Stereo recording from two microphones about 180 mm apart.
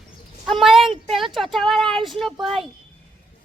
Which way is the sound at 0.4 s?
Centre (ahead or behind).